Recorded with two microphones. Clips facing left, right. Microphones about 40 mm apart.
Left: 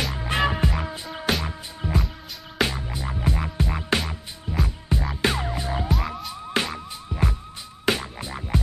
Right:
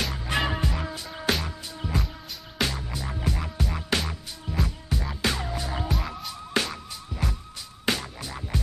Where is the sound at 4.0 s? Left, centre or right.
Centre.